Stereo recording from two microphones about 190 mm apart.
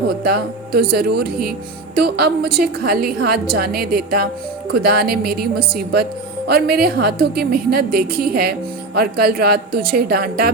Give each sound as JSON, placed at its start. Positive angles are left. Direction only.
{"t": 0.1, "sound": "a woman's voice", "side_deg": -55}